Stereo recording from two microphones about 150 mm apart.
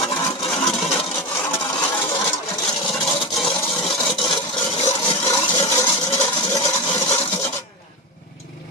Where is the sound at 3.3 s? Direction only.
Centre (ahead or behind).